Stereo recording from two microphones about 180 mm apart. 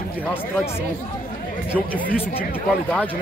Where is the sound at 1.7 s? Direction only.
10° left (ahead or behind).